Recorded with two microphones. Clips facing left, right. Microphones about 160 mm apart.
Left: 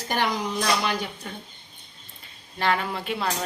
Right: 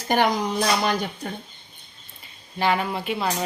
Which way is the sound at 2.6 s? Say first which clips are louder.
Right 2 dB; 5° right (ahead or behind).